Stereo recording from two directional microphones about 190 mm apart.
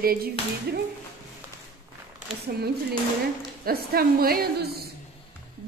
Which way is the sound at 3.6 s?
55° right (ahead or behind).